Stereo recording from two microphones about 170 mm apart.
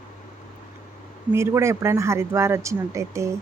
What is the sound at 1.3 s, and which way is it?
Speech, 15° right (ahead or behind).